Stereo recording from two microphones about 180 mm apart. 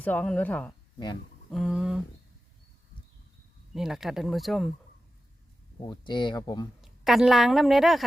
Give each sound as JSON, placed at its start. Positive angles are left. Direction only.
{"t": 0.0, "sound": "speech", "side_deg": 10}
{"t": 0.9, "sound": "speech", "side_deg": 25}
{"t": 1.5, "sound": "speech", "side_deg": 0}
{"t": 3.8, "sound": "speech", "side_deg": 0}
{"t": 5.8, "sound": "speech", "side_deg": 25}
{"t": 6.8, "sound": "a woman's voice", "side_deg": 0}